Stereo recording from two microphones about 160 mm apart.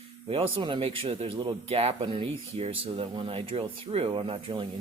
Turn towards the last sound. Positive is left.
turn(degrees=-35)  # may be behind; listen again after turning